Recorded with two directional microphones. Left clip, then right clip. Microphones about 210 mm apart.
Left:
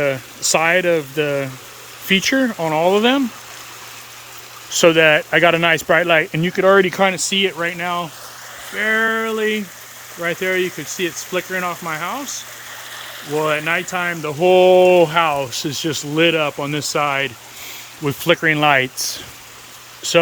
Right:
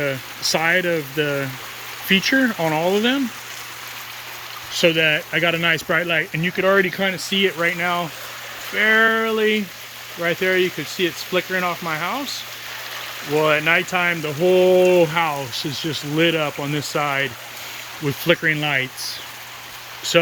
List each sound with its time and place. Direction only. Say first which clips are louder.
0.0 s speech: left 3 dB; 10° left (ahead or behind)
4.7 s speech: left 5 dB; 15° left (ahead or behind)
7.3 s speech: left 1 dB; centre (ahead or behind)
13.3 s speech: right 2 dB; 5° right (ahead or behind)
14.4 s speech: left 4 dB; 5° left (ahead or behind)
20.1 s speech: left 2 dB; 10° left (ahead or behind)